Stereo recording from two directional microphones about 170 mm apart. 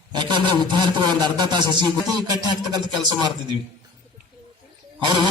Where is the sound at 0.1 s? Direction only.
25° right (ahead or behind).